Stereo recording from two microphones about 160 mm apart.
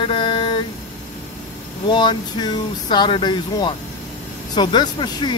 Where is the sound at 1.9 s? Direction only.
30° left (ahead or behind).